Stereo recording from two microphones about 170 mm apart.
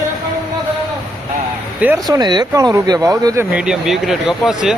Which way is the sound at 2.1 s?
25° right (ahead or behind).